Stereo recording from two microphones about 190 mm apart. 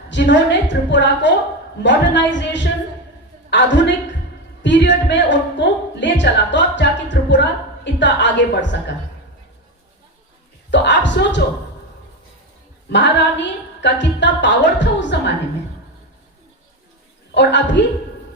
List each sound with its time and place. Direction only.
0.1 s a woman's voice: 70° left (ahead or behind)
10.7 s a woman's voice: 70° left (ahead or behind)
12.9 s a woman's voice: 70° left (ahead or behind)
17.3 s a woman's voice: 70° left (ahead or behind)